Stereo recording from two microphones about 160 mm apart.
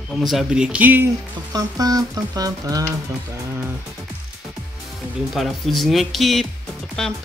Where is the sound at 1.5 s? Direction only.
25° right (ahead or behind).